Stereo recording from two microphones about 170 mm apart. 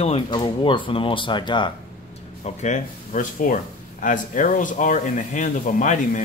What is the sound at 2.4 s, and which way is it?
Speech, 45° left (ahead or behind).